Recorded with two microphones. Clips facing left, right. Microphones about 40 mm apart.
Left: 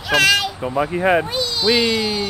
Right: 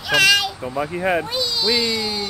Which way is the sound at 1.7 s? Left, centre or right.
Centre.